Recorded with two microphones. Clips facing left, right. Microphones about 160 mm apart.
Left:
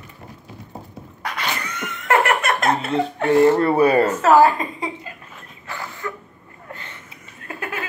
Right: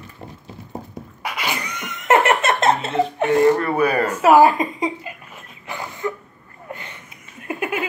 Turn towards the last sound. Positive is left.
turn(degrees=-15)  # may be behind; listen again after turning